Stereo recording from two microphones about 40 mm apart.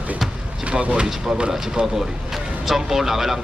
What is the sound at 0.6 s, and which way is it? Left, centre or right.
Speech, right.